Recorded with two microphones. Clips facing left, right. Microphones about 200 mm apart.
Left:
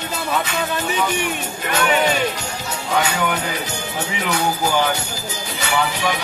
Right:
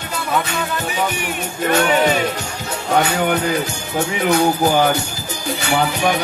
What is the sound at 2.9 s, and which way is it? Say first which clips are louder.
Music: right 4 dB; 45° right (ahead or behind).